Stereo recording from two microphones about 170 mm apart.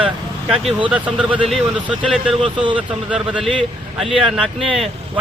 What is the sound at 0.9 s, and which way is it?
Speech, 5° right (ahead or behind).